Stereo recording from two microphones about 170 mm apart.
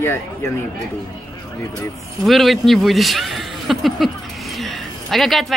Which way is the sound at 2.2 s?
Centre (ahead or behind).